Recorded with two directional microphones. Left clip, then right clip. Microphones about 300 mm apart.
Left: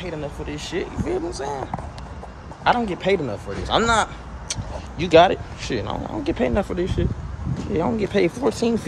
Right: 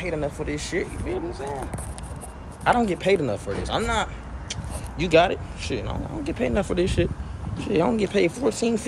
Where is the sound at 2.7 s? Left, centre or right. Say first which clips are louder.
Left 1 dB; centre.